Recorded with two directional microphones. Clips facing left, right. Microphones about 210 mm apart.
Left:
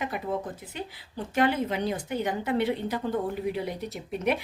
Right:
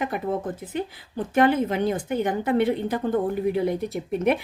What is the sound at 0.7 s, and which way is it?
A woman's voice, 50° right (ahead or behind).